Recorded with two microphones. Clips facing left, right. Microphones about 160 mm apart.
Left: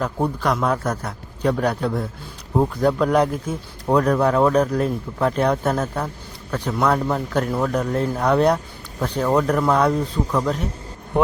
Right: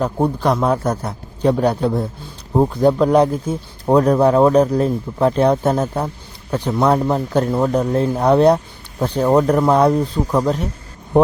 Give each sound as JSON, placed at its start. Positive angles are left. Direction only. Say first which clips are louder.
{"t": 0.0, "sound": "speech", "louder": "right 4 dB", "side_deg": -25}